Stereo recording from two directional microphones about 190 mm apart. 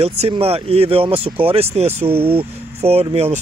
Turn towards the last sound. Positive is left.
turn(degrees=-35)  # may be behind; listen again after turning